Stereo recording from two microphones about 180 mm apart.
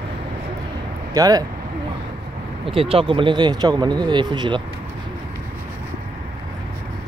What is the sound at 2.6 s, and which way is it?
Speech, 30° right (ahead or behind).